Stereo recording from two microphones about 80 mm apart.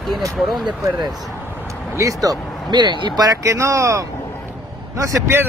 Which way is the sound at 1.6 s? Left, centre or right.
Right.